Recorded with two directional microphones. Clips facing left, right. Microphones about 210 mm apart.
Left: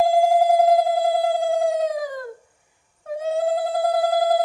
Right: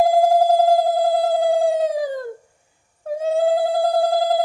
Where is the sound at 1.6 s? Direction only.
35° right (ahead or behind).